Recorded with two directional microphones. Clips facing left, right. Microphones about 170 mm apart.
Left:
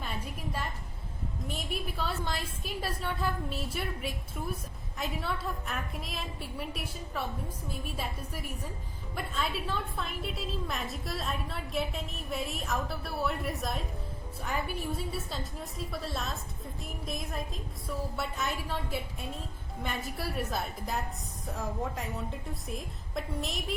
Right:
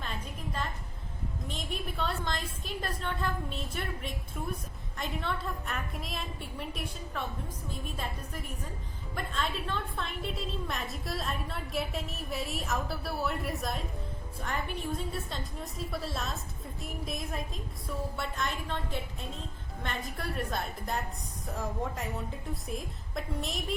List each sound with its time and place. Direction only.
0.0 s music: 10° left (ahead or behind)
1.5 s a woman's voice: 5° left (ahead or behind)